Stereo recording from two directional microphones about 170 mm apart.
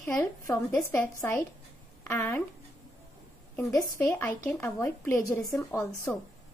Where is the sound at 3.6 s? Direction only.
20° left (ahead or behind).